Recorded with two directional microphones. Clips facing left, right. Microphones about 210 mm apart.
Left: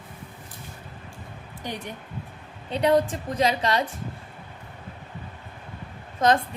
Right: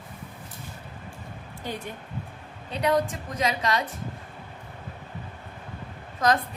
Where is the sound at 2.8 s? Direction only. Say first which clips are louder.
Left 3 dB; 30° left (ahead or behind).